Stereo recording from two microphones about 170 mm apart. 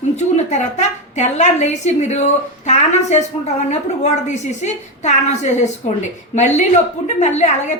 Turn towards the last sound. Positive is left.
turn(degrees=45)  # may be behind; listen again after turning